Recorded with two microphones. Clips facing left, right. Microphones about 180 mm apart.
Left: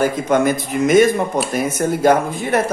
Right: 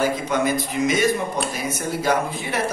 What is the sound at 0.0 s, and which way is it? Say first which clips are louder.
A man's voice: left 5 dB; 50° left (ahead or behind).